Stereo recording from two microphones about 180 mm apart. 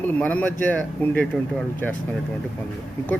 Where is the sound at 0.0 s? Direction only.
10° left (ahead or behind).